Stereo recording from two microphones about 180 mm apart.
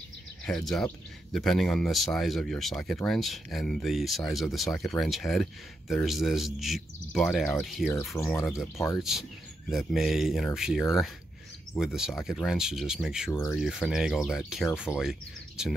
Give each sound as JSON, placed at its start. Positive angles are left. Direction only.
{"t": 0.5, "sound": "speech", "side_deg": 0}
{"t": 13.3, "sound": "speech", "side_deg": 10}
{"t": 13.6, "sound": "speech", "side_deg": 0}